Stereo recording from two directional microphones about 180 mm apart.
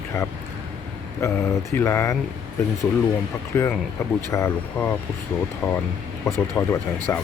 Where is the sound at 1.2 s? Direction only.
15° left (ahead or behind).